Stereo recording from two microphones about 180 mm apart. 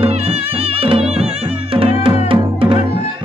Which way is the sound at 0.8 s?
30° right (ahead or behind).